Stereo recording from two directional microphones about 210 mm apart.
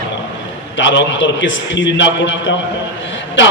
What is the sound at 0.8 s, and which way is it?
A man's voice, 60° left (ahead or behind).